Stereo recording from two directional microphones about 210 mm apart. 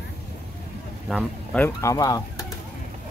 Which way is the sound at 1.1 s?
5° left (ahead or behind).